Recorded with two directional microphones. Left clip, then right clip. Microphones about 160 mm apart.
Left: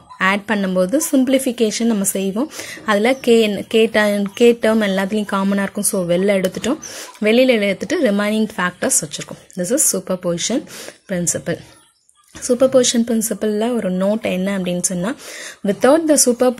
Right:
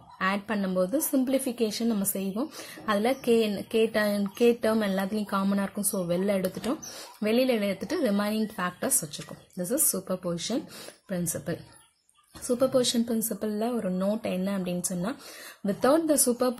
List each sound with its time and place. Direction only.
0.2 s a woman's voice: 35° left (ahead or behind)